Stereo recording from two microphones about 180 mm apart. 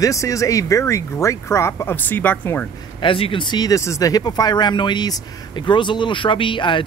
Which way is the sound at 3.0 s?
30° left (ahead or behind).